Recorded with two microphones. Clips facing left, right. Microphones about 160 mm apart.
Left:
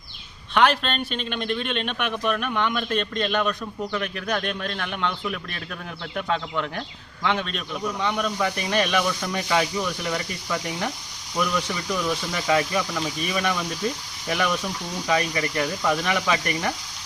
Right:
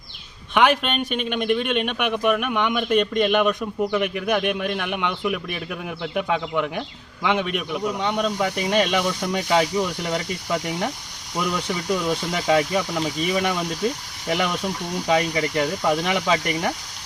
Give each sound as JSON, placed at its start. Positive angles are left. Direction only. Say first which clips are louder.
{"t": 0.5, "sound": "a man's voice", "louder": "right 2 dB", "side_deg": -15}